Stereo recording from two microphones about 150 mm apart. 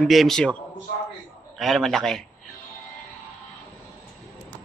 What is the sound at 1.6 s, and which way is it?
Speech, centre (ahead or behind).